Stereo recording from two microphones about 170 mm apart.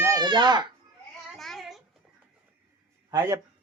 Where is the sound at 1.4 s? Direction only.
Centre (ahead or behind).